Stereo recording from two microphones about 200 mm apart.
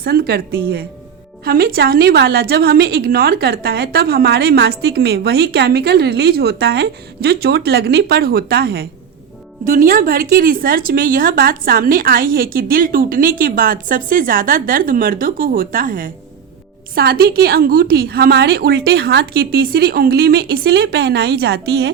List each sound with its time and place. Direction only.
0.0 s a woman's voice: 50° right (ahead or behind)